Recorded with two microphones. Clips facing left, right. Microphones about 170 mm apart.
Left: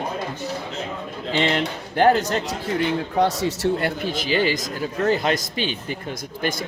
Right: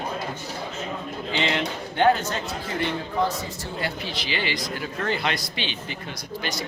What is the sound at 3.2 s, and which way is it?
Speech, 85° left.